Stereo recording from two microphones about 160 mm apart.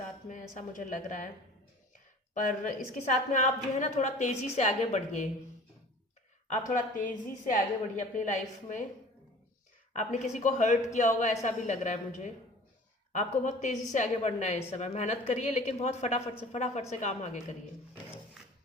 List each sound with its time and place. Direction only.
0.5 s a woman's voice: 55° left (ahead or behind)
2.3 s a woman's voice: 55° left (ahead or behind)
6.7 s a woman's voice: 55° left (ahead or behind)
9.9 s a woman's voice: 50° left (ahead or behind)